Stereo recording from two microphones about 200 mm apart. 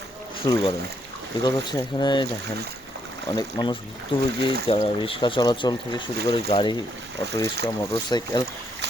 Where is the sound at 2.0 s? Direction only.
20° left (ahead or behind).